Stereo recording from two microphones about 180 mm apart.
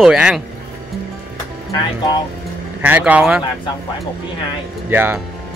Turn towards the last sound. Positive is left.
turn(degrees=-10)  # may be behind; listen again after turning